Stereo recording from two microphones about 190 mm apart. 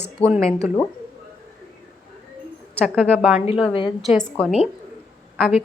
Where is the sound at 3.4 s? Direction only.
30° left (ahead or behind).